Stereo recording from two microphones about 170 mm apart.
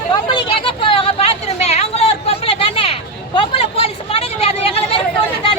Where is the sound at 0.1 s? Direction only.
30° left (ahead or behind).